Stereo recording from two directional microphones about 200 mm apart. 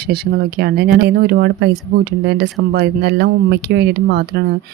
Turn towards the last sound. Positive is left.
turn(degrees=-55)  # may be behind; listen again after turning